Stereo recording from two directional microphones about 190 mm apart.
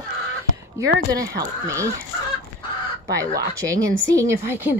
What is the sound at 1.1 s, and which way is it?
Speech, 20° right (ahead or behind).